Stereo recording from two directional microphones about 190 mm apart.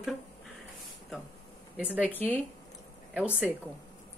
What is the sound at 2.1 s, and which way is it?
Speech, 10° left (ahead or behind).